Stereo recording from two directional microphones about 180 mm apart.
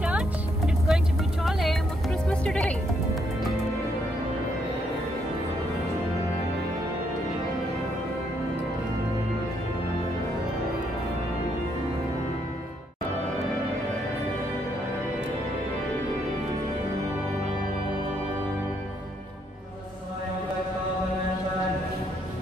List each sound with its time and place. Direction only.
0.8 s music: centre (ahead or behind)